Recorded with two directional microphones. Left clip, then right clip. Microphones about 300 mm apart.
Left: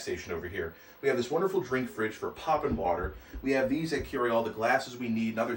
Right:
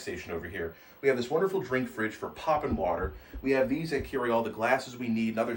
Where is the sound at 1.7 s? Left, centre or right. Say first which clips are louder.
Right 1 dB; centre.